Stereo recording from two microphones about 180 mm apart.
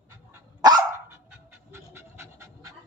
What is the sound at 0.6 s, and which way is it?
Dog, 20° right (ahead or behind).